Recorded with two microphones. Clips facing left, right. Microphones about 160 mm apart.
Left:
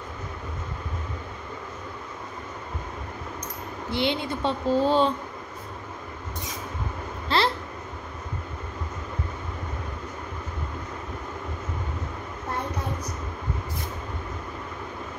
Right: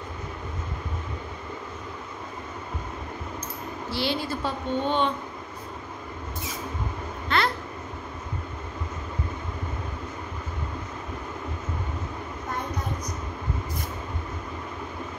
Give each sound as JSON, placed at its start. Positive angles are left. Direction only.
{"t": 3.9, "sound": "a woman's voice", "side_deg": 20}
{"t": 7.2, "sound": "babbling", "side_deg": 30}